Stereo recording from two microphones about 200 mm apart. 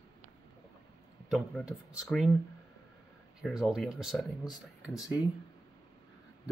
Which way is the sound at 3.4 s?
Centre (ahead or behind).